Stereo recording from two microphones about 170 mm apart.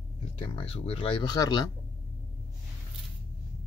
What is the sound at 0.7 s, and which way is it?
Speech, 35° left (ahead or behind).